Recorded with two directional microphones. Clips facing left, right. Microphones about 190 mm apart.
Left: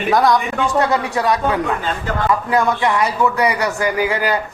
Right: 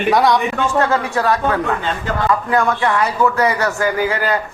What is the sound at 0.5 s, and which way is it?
Speech, 15° left (ahead or behind).